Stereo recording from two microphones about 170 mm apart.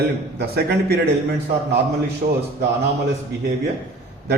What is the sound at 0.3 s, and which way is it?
Speech, 75° right (ahead or behind).